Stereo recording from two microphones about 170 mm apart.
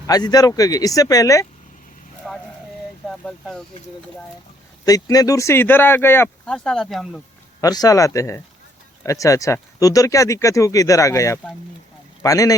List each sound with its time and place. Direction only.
0.1 s speech: 20° left (ahead or behind)
2.3 s a sound: centre (ahead or behind)
3.1 s speech: centre (ahead or behind)
4.9 s speech: 20° left (ahead or behind); by 7.2 s centre (ahead or behind)
7.6 s speech: 20° left (ahead or behind)